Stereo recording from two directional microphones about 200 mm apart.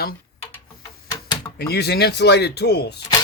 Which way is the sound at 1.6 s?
55° left (ahead or behind).